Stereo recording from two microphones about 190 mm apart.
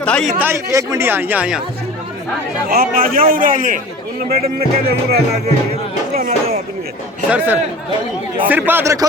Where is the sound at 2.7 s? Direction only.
50° right (ahead or behind).